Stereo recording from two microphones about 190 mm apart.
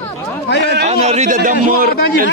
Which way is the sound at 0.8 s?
35° right (ahead or behind).